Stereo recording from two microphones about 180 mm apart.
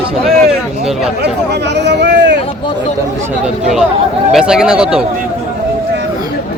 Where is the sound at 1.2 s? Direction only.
70° right (ahead or behind).